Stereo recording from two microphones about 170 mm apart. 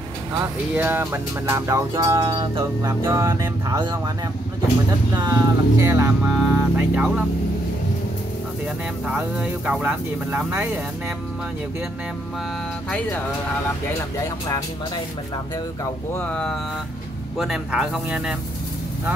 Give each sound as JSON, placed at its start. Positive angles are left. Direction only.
{"t": 0.7, "sound": "music", "side_deg": -10}
{"t": 5.1, "sound": "speech", "side_deg": -20}
{"t": 9.0, "sound": "speech", "side_deg": -5}
{"t": 15.8, "sound": "speech", "side_deg": 10}